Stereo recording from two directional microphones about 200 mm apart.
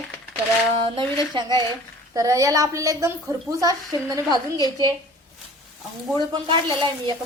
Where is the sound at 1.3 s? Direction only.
20° right (ahead or behind).